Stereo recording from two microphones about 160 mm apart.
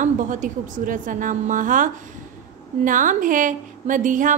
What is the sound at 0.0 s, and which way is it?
A woman's voice, 50° right (ahead or behind).